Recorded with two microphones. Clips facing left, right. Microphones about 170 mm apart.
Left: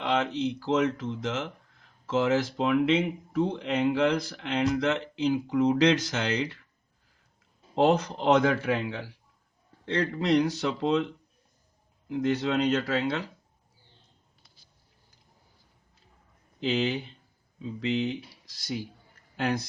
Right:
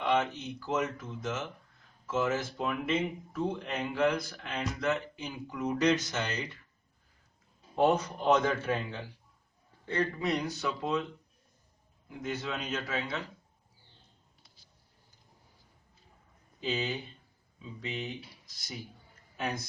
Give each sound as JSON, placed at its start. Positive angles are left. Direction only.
{"t": 0.0, "sound": "speech", "side_deg": 75}
{"t": 7.8, "sound": "a man's voice", "side_deg": 85}
{"t": 12.0, "sound": "speech", "side_deg": 75}
{"t": 16.6, "sound": "a man's voice", "side_deg": 80}